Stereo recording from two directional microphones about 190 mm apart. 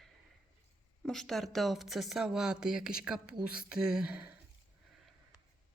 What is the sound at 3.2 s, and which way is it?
Speech, 50° left (ahead or behind).